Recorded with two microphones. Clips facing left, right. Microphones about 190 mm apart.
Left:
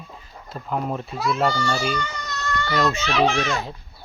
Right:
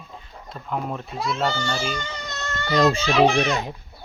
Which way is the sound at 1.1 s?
25° right (ahead or behind).